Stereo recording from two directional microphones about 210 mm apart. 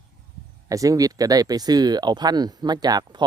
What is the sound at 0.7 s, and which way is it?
Speech, 15° right (ahead or behind).